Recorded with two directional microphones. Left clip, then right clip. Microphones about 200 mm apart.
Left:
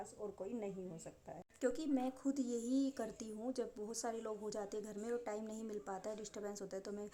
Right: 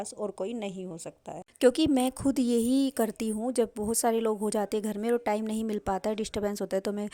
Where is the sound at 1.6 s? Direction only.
35° right (ahead or behind).